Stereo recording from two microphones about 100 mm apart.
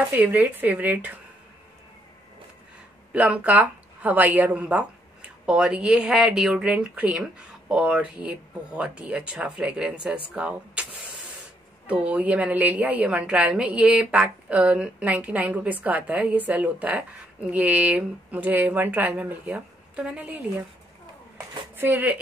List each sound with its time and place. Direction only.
0.1 s a woman's voice: 15° right (ahead or behind)
3.1 s a woman's voice: 15° right (ahead or behind)
11.9 s a woman's voice: 15° right (ahead or behind)
21.7 s speech: 15° right (ahead or behind)